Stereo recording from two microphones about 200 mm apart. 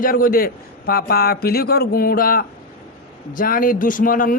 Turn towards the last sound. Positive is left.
turn(degrees=45)  # may be behind; listen again after turning